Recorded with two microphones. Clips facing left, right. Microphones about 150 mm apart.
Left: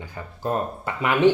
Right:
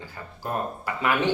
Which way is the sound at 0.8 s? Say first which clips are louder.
Left 7 dB; 20° left (ahead or behind).